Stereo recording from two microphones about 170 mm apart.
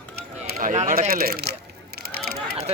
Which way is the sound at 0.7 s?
45° right (ahead or behind).